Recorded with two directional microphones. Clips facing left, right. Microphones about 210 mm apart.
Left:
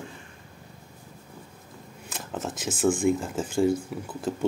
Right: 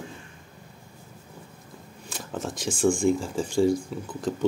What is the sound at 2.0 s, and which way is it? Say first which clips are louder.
Speech: right 1 dB; centre (ahead or behind).